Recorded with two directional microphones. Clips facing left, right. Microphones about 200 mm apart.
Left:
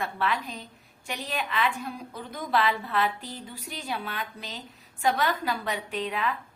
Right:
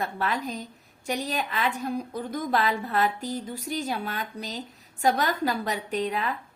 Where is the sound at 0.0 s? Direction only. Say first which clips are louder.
Right 1 dB; 40° right (ahead or behind).